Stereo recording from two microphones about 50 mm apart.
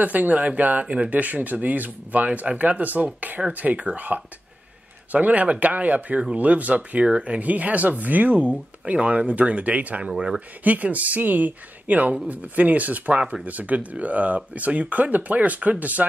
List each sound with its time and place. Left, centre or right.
0.0 s speech: right